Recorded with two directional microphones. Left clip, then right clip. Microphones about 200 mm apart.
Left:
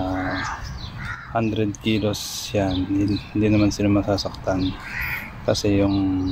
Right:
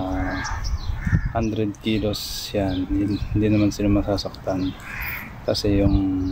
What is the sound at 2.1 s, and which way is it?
Speech, 30° right (ahead or behind).